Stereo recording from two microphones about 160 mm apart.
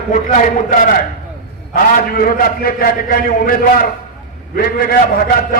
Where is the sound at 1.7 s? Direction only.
65° left (ahead or behind).